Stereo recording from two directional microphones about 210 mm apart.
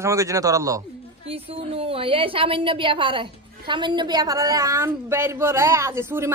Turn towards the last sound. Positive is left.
turn(degrees=-10)  # may be behind; listen again after turning